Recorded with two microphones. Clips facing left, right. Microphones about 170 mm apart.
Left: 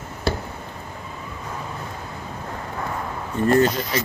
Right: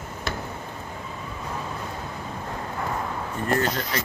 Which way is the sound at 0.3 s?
30° left (ahead or behind).